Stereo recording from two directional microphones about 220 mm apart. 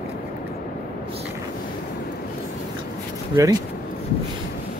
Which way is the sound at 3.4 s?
20° right (ahead or behind).